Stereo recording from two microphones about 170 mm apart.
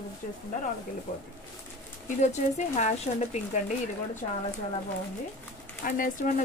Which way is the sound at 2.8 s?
45° left (ahead or behind).